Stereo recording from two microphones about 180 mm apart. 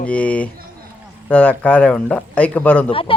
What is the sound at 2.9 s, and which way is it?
Speech, 30° left (ahead or behind).